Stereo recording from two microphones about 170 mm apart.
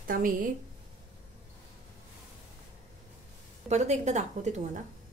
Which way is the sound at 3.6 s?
40° right (ahead or behind).